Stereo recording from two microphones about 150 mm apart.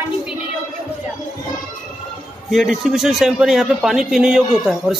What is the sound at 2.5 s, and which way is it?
A man's voice, centre (ahead or behind).